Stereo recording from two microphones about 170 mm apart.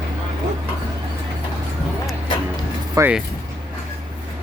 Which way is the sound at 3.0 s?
20° right (ahead or behind).